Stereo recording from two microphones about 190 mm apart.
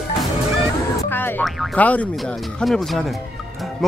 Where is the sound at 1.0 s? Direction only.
10° left (ahead or behind).